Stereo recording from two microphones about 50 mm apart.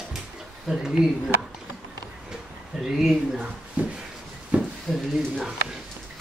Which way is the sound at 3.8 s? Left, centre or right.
Right.